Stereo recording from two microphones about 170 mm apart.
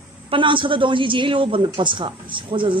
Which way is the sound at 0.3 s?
30° right (ahead or behind).